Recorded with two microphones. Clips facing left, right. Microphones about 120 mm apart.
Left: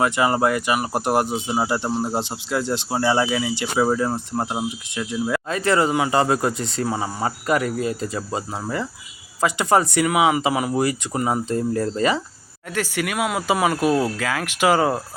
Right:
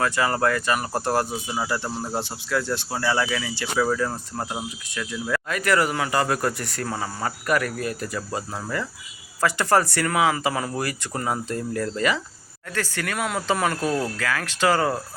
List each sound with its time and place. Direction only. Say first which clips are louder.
0.0 s speech: left 3 dB; 20° left (ahead or behind)
12.7 s speech: left 4 dB; 15° left (ahead or behind)